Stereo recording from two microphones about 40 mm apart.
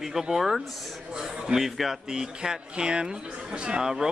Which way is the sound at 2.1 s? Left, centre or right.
Centre.